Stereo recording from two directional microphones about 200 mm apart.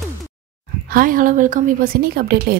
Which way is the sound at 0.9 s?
45° right (ahead or behind).